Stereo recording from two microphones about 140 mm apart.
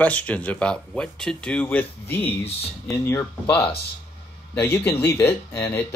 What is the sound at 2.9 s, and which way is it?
Speech, 15° left (ahead or behind).